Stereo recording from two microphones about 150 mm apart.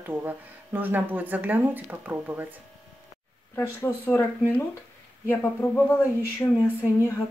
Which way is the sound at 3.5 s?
15° left (ahead or behind).